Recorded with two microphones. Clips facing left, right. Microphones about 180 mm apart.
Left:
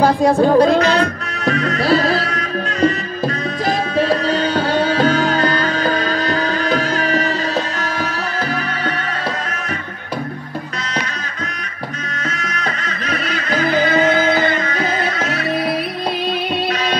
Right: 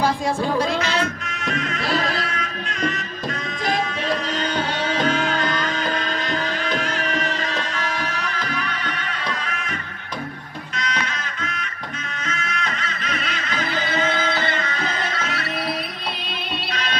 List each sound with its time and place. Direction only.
0.0 s music: 60° left (ahead or behind)
0.7 s music: 35° left (ahead or behind)
4.1 s music: 35° left (ahead or behind)
13.3 s music: 45° left (ahead or behind)